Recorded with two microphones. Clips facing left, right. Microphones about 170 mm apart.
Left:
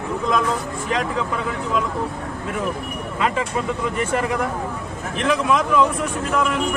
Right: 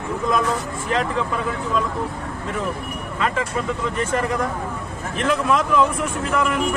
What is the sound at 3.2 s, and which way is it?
A man's voice, 15° left (ahead or behind).